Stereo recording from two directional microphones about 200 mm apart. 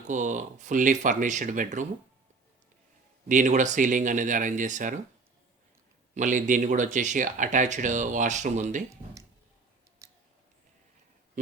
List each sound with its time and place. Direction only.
0.1 s speech: 40° right (ahead or behind)
3.2 s speech: 40° right (ahead or behind)
6.1 s speech: 40° right (ahead or behind)
10.0 s a sound: 15° right (ahead or behind)